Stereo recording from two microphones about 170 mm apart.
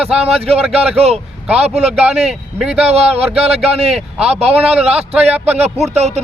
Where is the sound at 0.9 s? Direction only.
35° right (ahead or behind).